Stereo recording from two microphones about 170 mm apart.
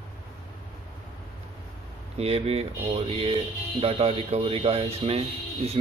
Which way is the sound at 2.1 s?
35° right (ahead or behind).